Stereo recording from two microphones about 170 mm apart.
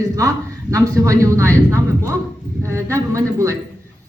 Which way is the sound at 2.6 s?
15° right (ahead or behind).